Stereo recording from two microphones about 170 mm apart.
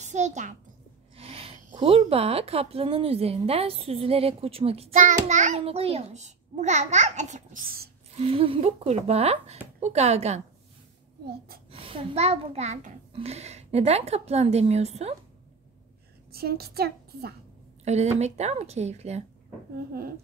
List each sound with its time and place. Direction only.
0.0 s a child's voice: 45° right (ahead or behind)
1.1 s a sound: 35° right (ahead or behind)
1.6 s a child's voice: 45° right (ahead or behind)
4.9 s a child's voice: 45° right (ahead or behind)
11.7 s a child's voice: 35° right (ahead or behind)
16.3 s a child's voice: 65° right (ahead or behind)
17.8 s a child's voice: 40° right (ahead or behind)